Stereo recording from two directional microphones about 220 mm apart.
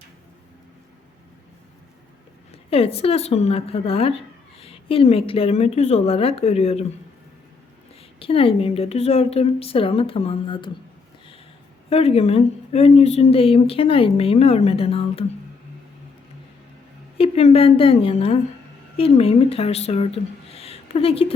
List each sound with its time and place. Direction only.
2.5 s speech: 25° left (ahead or behind)
8.2 s speech: 25° left (ahead or behind)
11.9 s speech: 25° left (ahead or behind)
17.2 s a woman's voice: 25° left (ahead or behind)